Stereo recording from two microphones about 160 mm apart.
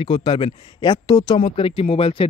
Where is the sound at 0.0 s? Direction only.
35° left (ahead or behind).